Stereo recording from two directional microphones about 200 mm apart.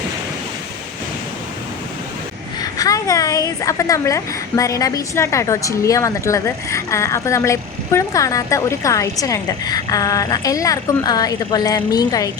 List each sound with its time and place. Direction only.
2.6 s a woman's voice: 20° left (ahead or behind)